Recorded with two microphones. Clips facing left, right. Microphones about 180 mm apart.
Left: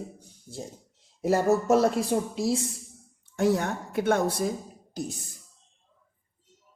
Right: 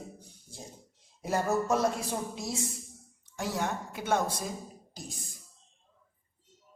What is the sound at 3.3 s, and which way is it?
A woman's voice, 55° left (ahead or behind).